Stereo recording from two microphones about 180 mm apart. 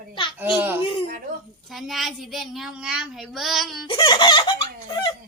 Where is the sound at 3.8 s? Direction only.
25° left (ahead or behind).